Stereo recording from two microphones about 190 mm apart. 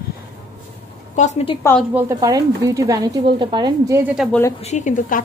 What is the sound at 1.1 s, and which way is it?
Speech, 40° left (ahead or behind).